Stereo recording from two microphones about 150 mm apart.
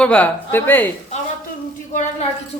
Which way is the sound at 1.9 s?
50° left (ahead or behind).